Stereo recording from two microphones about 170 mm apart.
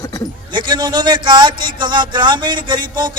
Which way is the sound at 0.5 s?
25° right (ahead or behind).